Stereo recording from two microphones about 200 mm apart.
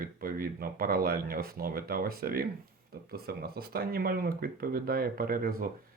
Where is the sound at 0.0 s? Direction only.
45° right (ahead or behind).